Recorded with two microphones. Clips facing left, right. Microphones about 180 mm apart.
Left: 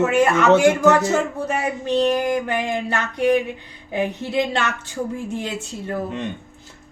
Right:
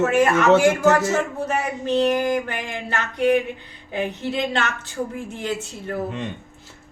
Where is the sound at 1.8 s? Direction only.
15° left (ahead or behind).